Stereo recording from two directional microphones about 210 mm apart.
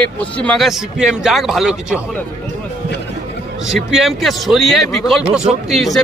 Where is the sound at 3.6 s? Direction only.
Centre (ahead or behind).